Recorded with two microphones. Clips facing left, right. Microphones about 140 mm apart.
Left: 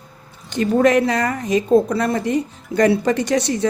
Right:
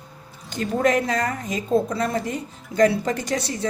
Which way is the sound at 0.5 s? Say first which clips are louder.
Left 6 dB; 85° left.